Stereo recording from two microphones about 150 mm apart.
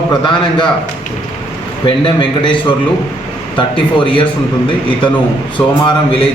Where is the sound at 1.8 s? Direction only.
30° left (ahead or behind).